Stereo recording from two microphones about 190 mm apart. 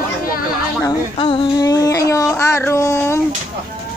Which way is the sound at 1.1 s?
30° left (ahead or behind).